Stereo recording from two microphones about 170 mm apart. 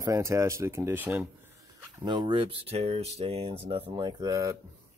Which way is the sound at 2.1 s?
25° right (ahead or behind).